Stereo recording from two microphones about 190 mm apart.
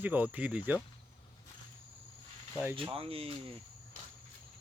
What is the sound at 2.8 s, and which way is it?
Speech, 30° right (ahead or behind).